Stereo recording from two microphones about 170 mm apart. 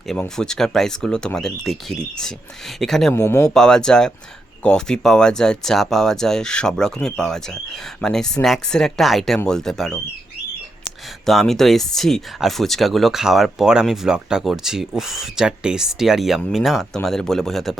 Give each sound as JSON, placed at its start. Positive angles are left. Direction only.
{"t": 0.1, "sound": "speech", "side_deg": 5}
{"t": 3.2, "sound": "speech", "side_deg": 15}
{"t": 3.5, "sound": "speech", "side_deg": 5}
{"t": 11.3, "sound": "speech", "side_deg": 0}